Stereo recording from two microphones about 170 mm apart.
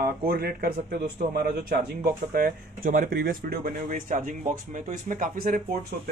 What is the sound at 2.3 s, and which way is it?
Speech, 55° right (ahead or behind).